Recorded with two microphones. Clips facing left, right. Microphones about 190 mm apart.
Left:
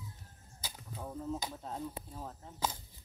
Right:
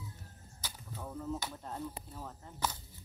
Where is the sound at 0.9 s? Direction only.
15° left (ahead or behind).